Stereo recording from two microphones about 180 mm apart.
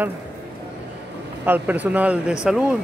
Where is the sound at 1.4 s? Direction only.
10° right (ahead or behind).